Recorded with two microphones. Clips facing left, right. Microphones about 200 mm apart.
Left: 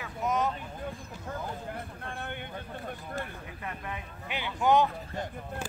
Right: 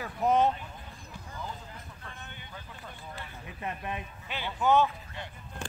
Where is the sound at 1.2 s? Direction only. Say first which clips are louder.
Left 5 dB; 60° left (ahead or behind).